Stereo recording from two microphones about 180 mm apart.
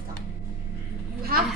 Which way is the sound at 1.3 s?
55° right (ahead or behind).